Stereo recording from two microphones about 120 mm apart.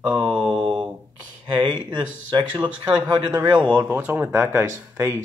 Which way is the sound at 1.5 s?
40° right (ahead or behind).